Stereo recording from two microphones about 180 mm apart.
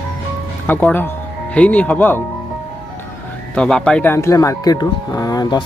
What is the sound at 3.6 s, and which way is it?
Speech, 5° left (ahead or behind).